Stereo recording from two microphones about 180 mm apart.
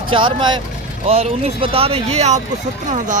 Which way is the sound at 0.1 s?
25° right (ahead or behind).